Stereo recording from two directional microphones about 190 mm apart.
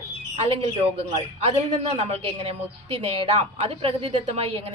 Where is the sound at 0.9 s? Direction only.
30° right (ahead or behind).